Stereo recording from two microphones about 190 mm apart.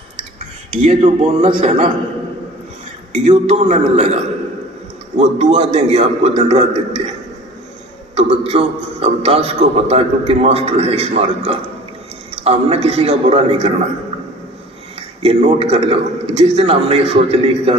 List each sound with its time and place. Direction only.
0.9 s a man's voice: 35° right (ahead or behind)
3.1 s a man's voice: 35° right (ahead or behind)
8.1 s a man's voice: 30° right (ahead or behind)
15.2 s a man's voice: 30° right (ahead or behind)